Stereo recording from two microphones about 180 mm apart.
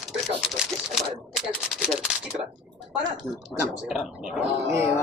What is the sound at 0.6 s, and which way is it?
Speech, centre (ahead or behind).